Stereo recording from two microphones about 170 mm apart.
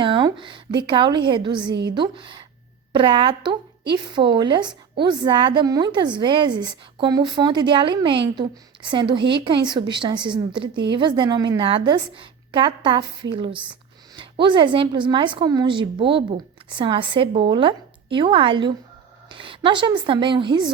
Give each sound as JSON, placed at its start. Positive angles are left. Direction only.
{"t": 0.0, "sound": "a woman's voice", "side_deg": -25}
{"t": 14.2, "sound": "a woman's voice", "side_deg": -25}